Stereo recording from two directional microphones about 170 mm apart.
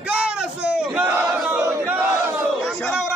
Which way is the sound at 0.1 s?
5° right (ahead or behind).